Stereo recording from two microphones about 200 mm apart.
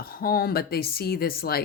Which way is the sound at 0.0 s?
50° left (ahead or behind).